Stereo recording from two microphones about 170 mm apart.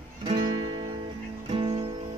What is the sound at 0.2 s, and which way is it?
Music, 35° right (ahead or behind).